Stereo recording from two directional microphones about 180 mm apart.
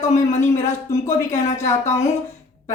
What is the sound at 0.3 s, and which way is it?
A woman's voice, 15° left (ahead or behind).